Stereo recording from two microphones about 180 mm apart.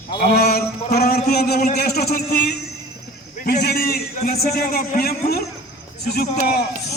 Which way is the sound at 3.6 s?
60° left (ahead or behind).